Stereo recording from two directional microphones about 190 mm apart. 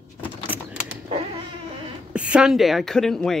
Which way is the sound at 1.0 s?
30° right (ahead or behind).